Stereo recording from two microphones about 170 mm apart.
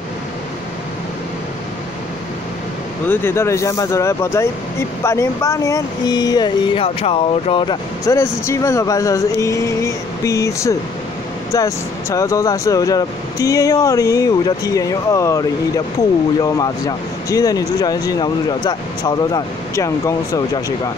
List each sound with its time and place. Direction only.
3.1 s speech: 15° left (ahead or behind)